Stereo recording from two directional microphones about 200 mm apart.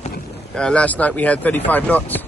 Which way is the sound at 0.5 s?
5° left (ahead or behind).